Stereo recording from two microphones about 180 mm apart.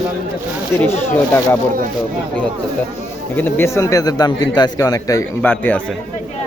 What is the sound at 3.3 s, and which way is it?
A man's voice, 10° left (ahead or behind).